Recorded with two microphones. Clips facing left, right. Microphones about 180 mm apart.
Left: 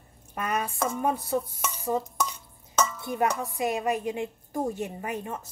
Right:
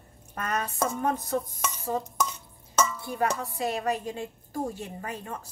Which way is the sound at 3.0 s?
20° left (ahead or behind).